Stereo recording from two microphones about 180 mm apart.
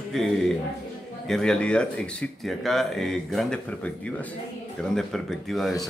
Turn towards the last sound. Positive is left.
turn(degrees=0)  # may be behind; listen again after turning